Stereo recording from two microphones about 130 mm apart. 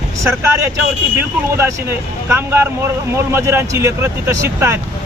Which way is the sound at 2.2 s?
20° right (ahead or behind).